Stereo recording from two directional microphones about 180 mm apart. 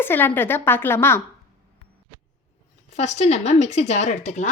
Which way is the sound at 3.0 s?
35° left (ahead or behind).